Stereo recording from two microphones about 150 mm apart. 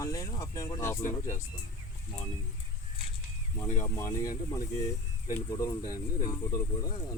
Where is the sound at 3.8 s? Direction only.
20° left (ahead or behind).